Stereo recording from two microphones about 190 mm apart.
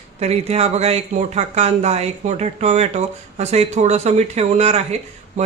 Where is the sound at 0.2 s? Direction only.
35° right (ahead or behind).